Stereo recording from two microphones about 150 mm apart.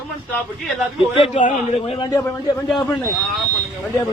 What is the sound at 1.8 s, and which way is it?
Speech, 35° left (ahead or behind).